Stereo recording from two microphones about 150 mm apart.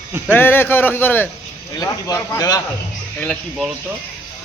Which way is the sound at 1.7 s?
25° left (ahead or behind).